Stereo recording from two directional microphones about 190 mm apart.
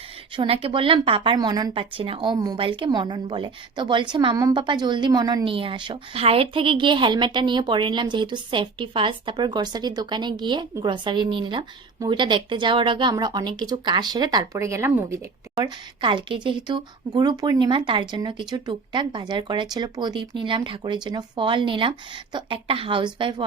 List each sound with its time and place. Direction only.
0.3 s speech: 30° right (ahead or behind)